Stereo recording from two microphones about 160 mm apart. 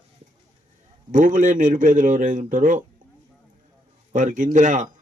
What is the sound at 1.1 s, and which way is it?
A man's voice, 55° right (ahead or behind).